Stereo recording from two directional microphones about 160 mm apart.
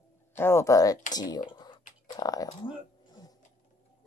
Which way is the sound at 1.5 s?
30° left (ahead or behind).